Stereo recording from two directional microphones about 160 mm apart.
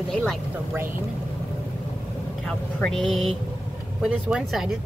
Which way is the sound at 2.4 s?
Centre (ahead or behind).